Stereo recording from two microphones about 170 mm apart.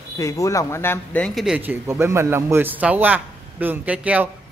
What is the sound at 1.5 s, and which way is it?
A man's voice, 15° right (ahead or behind).